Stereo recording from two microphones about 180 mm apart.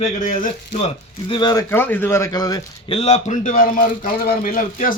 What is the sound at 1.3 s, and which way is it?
A man's voice, 25° left (ahead or behind).